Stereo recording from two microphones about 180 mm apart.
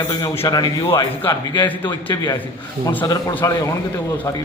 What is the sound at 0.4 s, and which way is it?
A man's voice, 20° left (ahead or behind).